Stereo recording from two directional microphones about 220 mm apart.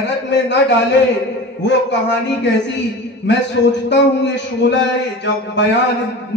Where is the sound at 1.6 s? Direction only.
50° left (ahead or behind).